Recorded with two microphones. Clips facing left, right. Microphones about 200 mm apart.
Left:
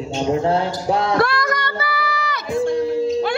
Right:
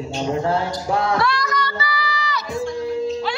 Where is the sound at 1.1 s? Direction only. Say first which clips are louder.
Left 3 dB; 50° left (ahead or behind).